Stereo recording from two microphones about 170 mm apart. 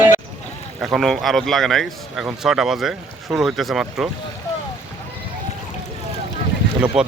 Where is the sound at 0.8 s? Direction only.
Centre (ahead or behind).